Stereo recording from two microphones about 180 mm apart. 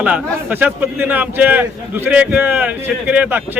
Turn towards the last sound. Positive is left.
turn(degrees=-10)  # may be behind; listen again after turning